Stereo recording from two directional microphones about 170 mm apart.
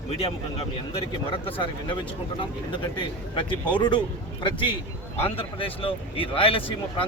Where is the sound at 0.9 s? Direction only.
30° left (ahead or behind).